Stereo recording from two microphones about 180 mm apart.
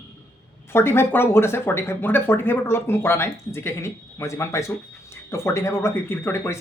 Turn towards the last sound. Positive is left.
turn(degrees=15)  # may be behind; listen again after turning